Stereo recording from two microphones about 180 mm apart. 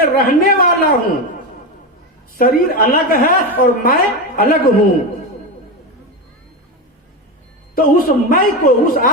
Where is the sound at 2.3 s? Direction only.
55° left (ahead or behind).